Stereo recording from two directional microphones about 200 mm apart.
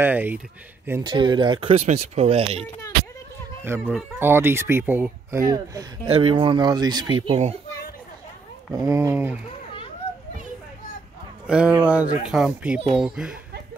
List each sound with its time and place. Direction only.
0.0 s speech: 10° right (ahead or behind)
1.1 s speech: 25° right (ahead or behind)
3.6 s speech: 10° right (ahead or behind); by 7.5 s 30° right (ahead or behind)
8.7 s speech: 15° right (ahead or behind)
11.4 s speech: 5° right (ahead or behind)